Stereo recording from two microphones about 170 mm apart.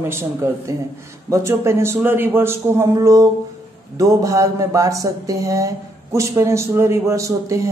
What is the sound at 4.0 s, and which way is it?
Mantra, 20° right (ahead or behind).